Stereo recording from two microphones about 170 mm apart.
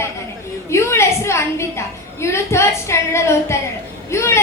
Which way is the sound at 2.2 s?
15° left (ahead or behind).